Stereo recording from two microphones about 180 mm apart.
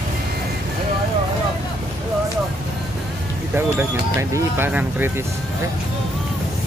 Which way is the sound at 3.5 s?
10° right (ahead or behind).